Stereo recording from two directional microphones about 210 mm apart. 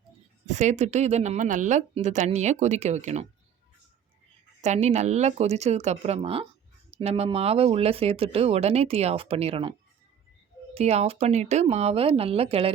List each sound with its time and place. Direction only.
0.4 s speech: 35° right (ahead or behind)
4.6 s speech: 35° right (ahead or behind)
10.8 s speech: 30° right (ahead or behind)